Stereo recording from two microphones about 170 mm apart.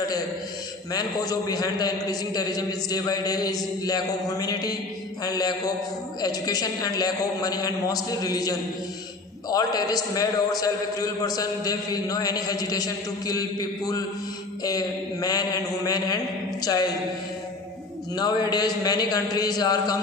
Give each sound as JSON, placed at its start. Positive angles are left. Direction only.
{"t": 0.9, "sound": "a man's voice", "side_deg": 20}
{"t": 18.1, "sound": "a man's voice", "side_deg": 25}